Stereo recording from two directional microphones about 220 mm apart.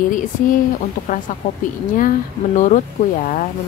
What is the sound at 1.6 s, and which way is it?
A woman's voice, 35° left (ahead or behind).